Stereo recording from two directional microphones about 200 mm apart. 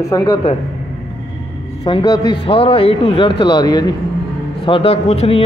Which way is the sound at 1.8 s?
20° left (ahead or behind).